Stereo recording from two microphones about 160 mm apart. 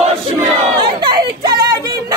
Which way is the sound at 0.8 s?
30° right (ahead or behind).